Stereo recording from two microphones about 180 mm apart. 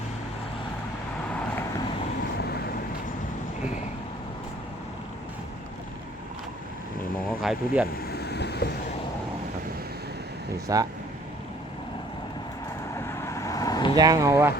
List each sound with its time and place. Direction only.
2.4 s vehicle: 60° left (ahead or behind)
7.3 s speech: 5° right (ahead or behind)
8.0 s boat: 65° left (ahead or behind)
10.7 s speech: 20° right (ahead or behind)
13.1 s vehicle: 15° left (ahead or behind)
13.9 s speech: 20° right (ahead or behind)